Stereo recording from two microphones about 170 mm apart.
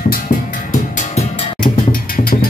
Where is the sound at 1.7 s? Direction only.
60° left (ahead or behind).